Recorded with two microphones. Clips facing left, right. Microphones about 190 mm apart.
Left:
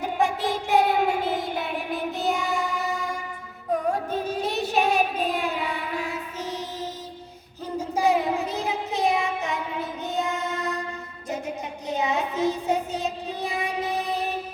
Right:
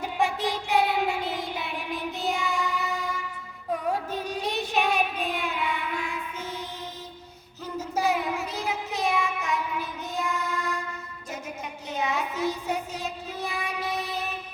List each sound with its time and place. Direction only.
0.0 s child singing: 45° left (ahead or behind)
8.0 s child singing: 30° left (ahead or behind)
11.9 s child singing: 25° left (ahead or behind)